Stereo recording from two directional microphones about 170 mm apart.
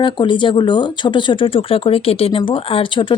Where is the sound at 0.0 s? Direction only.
30° left (ahead or behind).